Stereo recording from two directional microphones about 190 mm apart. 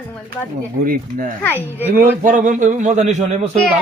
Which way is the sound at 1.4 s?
10° left (ahead or behind).